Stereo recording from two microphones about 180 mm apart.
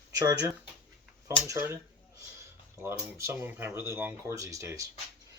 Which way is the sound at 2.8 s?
15° right (ahead or behind).